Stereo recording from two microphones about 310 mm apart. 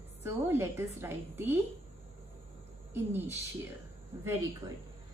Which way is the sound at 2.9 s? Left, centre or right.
Centre.